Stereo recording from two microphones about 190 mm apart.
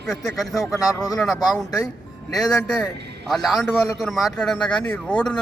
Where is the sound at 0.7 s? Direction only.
20° left (ahead or behind).